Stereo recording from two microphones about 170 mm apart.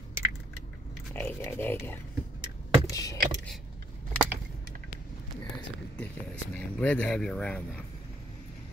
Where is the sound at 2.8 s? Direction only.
20° left (ahead or behind).